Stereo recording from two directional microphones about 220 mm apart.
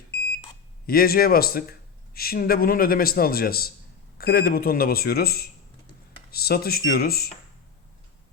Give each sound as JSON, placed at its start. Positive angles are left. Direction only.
{"t": 0.9, "sound": "a man's voice", "side_deg": 45}